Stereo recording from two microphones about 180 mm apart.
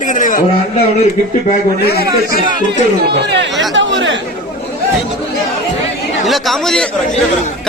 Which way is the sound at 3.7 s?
90° right.